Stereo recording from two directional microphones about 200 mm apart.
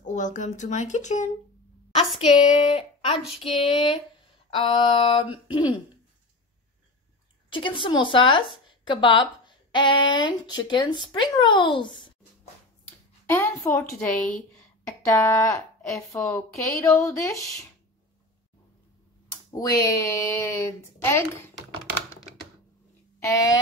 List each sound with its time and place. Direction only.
0.0 s speech: 35° left (ahead or behind)
3.4 s a sound: centre (ahead or behind)
3.7 s speech: 25° left (ahead or behind)
7.5 s speech: 25° left (ahead or behind)
13.3 s speech: 15° left (ahead or behind)
14.9 s speech: 15° left (ahead or behind)
19.6 s speech: 15° left (ahead or behind)
23.2 s speech: 15° left (ahead or behind)